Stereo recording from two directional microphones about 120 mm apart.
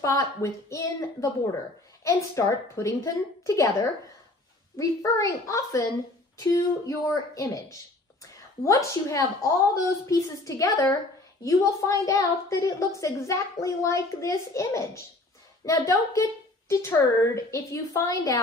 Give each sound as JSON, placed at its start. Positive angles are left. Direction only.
{"t": 0.4, "sound": "a woman's voice", "side_deg": 25}
{"t": 8.6, "sound": "a woman's voice", "side_deg": 25}